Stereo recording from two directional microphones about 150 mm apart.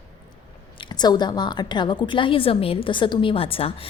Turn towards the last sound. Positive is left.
turn(degrees=40)  # may be behind; listen again after turning